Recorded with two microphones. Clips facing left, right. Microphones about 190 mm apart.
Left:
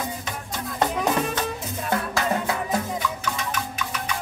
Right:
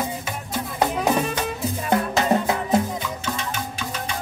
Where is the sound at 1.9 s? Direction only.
20° right (ahead or behind).